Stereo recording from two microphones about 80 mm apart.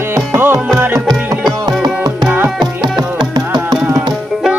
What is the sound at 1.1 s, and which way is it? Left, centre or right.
Music, right.